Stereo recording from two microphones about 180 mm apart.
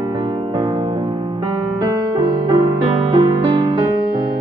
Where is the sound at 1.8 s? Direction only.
20° right (ahead or behind).